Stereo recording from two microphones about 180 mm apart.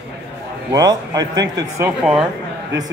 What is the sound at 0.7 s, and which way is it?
A man's voice, 20° right (ahead or behind).